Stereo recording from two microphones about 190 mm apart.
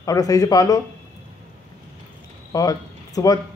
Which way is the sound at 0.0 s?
20° left (ahead or behind).